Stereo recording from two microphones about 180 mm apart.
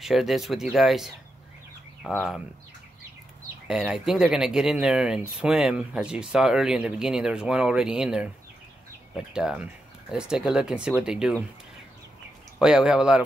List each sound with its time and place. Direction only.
0.0 s speech: centre (ahead or behind)
3.6 s speech: 5° right (ahead or behind)
12.5 s speech: 5° right (ahead or behind)